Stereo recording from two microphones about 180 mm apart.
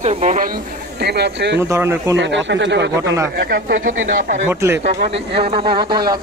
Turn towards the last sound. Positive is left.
turn(degrees=-25)  # may be behind; listen again after turning